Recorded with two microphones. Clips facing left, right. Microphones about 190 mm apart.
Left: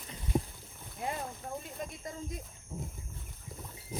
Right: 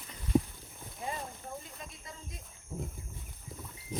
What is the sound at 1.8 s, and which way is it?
Snake, 50° left (ahead or behind).